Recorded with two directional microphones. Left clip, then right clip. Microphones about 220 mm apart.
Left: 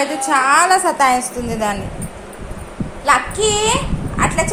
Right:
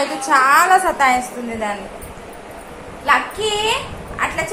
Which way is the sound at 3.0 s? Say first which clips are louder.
Left 2 dB; 45° left (ahead or behind).